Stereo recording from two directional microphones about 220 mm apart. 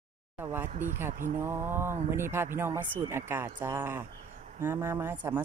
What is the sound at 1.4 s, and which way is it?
Speech, 10° right (ahead or behind).